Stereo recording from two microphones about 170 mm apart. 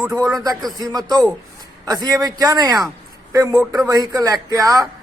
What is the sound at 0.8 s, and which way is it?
Speech, 25° right (ahead or behind).